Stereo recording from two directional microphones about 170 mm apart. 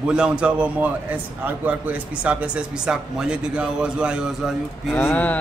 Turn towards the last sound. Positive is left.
turn(degrees=10)  # may be behind; listen again after turning